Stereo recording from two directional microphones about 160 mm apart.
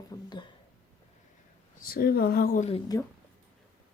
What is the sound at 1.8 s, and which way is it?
Speech, 70° left (ahead or behind).